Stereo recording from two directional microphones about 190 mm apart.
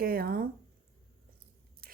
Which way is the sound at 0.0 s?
50° right (ahead or behind).